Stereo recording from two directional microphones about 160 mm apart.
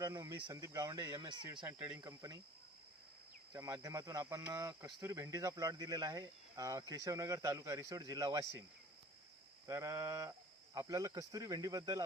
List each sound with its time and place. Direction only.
0.0 s speech: 20° right (ahead or behind)
1.6 s speech: 10° right (ahead or behind)
2.0 s speech: 20° right (ahead or behind)
3.5 s speech: 20° right (ahead or behind)
9.6 s speech: 20° right (ahead or behind)